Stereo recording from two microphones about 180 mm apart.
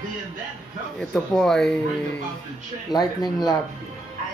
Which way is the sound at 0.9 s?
5° left (ahead or behind).